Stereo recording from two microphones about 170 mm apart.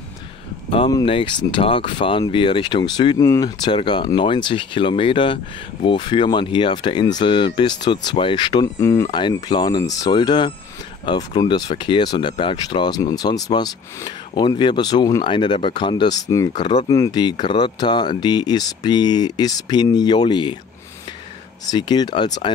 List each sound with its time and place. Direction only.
0.7 s a sound: 30° left (ahead or behind)
1.0 s speech: 30° left (ahead or behind)
21.6 s speech: 25° left (ahead or behind)